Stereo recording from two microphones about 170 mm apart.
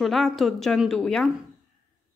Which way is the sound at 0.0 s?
Centre (ahead or behind).